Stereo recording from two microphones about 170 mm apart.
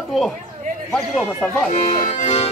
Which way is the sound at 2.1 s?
40° left (ahead or behind).